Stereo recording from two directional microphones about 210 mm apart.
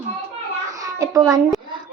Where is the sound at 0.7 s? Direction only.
15° right (ahead or behind).